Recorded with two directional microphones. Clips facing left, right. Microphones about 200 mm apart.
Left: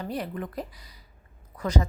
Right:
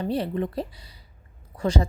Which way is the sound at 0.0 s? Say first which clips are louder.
Right 6 dB; 30° right (ahead or behind).